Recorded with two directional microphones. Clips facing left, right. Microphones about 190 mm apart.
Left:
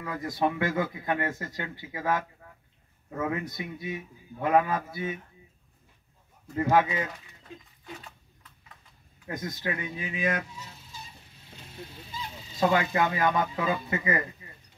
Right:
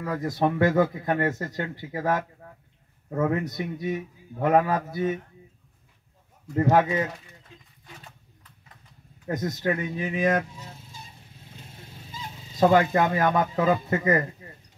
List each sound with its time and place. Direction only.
0.0 s speech: 40° right (ahead or behind)
6.5 s speech: 40° right (ahead or behind)
9.3 s speech: 40° right (ahead or behind)